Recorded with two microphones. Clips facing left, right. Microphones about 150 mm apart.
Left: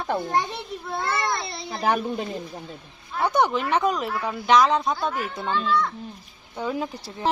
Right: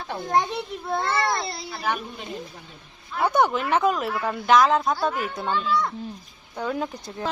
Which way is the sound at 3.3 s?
5° right (ahead or behind).